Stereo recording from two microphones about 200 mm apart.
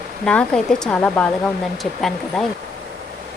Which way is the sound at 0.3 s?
5° left (ahead or behind).